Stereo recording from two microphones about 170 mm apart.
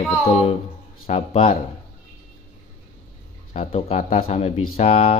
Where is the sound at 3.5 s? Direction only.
35° left (ahead or behind).